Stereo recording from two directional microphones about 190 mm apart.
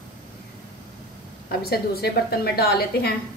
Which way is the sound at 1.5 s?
55° left (ahead or behind).